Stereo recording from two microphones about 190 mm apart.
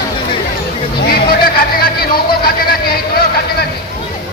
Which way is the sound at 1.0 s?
55° left (ahead or behind).